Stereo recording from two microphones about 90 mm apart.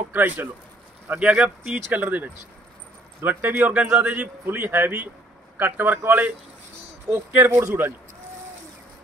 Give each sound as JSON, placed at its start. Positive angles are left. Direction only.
{"t": 0.1, "sound": "a man's voice", "side_deg": -20}